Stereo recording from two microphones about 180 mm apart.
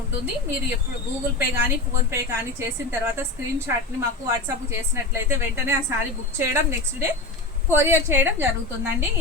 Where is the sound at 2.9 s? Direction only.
15° right (ahead or behind).